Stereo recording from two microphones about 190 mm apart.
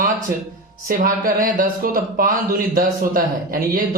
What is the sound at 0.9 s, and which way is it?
Speech, 45° right (ahead or behind).